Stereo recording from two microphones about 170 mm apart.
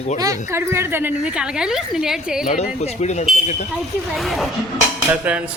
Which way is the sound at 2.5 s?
40° left (ahead or behind).